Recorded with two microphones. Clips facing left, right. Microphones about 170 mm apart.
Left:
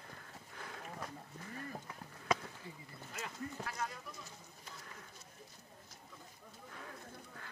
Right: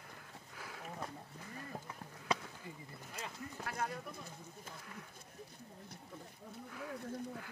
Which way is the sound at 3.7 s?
55° right (ahead or behind).